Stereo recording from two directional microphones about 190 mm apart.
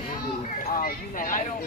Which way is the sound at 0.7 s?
50° left (ahead or behind).